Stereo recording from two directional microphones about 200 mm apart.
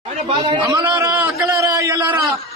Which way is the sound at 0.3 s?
25° right (ahead or behind).